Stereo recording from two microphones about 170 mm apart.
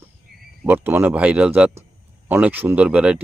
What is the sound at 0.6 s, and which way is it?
Speech, 10° right (ahead or behind).